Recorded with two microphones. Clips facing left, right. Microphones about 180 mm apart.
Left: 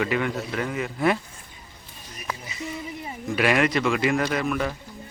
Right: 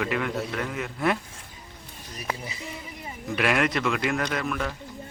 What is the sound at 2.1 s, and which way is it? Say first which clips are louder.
Speech: right 2 dB; 35° right (ahead or behind).